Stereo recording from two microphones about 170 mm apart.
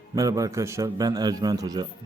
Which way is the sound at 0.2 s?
20° right (ahead or behind).